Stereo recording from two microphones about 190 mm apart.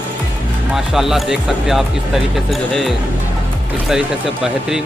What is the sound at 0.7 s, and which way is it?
A man's voice, centre (ahead or behind).